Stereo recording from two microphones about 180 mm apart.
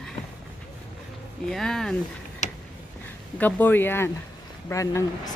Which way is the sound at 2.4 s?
40° left (ahead or behind).